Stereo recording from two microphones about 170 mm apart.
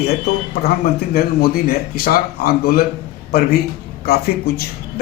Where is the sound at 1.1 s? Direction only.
65° left (ahead or behind).